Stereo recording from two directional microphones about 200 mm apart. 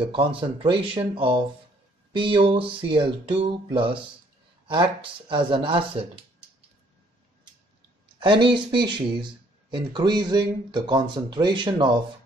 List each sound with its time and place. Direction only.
0.0 s speech: 25° right (ahead or behind)
8.2 s speech: 25° right (ahead or behind)